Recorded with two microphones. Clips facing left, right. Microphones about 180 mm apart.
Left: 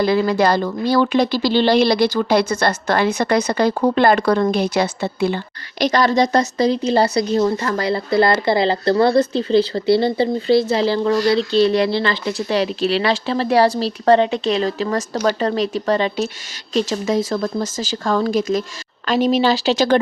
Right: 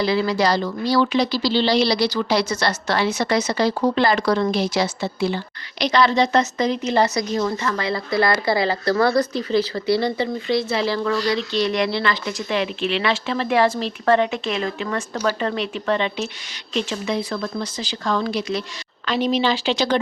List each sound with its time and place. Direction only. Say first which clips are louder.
0.0 s a woman's voice: left 4 dB; 50° left (ahead or behind)
5.8 s speech: left 2 dB; 45° left (ahead or behind)